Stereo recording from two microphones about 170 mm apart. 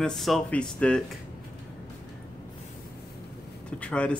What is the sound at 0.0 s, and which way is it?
Speech, centre (ahead or behind).